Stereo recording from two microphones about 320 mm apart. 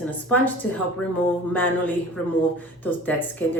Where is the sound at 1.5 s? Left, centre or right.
Centre.